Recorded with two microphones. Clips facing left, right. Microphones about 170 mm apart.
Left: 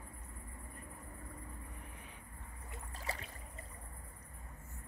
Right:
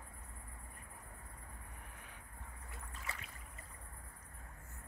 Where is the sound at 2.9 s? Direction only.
35° left (ahead or behind).